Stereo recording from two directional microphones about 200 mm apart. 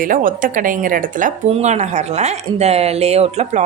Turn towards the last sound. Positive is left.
turn(degrees=-35)  # may be behind; listen again after turning